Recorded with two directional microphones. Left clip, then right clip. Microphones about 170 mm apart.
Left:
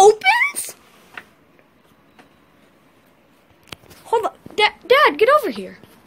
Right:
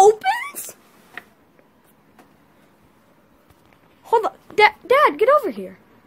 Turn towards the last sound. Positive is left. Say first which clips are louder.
# left 1 dB
turn(degrees=-5)  # may be behind; listen again after turning